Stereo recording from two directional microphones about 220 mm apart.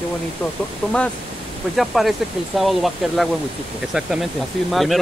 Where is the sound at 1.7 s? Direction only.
Centre (ahead or behind).